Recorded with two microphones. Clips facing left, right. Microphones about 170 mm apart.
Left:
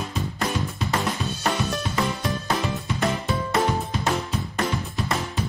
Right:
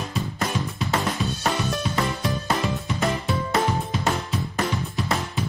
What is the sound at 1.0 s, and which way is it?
Music, centre (ahead or behind).